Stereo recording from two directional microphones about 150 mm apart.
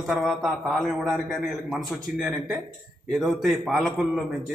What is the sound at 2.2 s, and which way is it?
A man's voice, centre (ahead or behind).